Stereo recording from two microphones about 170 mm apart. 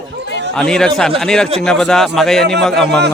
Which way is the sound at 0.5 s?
5° left (ahead or behind).